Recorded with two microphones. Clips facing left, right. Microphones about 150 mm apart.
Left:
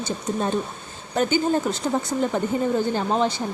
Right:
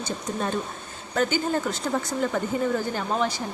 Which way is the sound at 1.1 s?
20° left (ahead or behind).